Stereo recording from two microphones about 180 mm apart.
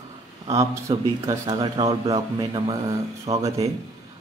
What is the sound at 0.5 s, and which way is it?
Speech, 15° right (ahead or behind).